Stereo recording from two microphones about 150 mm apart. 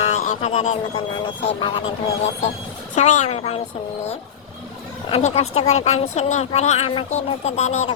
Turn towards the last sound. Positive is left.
turn(degrees=45)  # may be behind; listen again after turning